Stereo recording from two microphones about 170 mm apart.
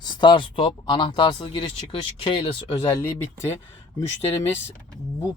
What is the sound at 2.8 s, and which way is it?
Speech, 20° left (ahead or behind).